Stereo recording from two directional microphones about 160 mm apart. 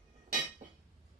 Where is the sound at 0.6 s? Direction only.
45° right (ahead or behind).